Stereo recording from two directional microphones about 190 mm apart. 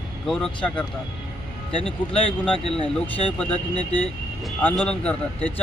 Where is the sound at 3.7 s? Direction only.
20° right (ahead or behind).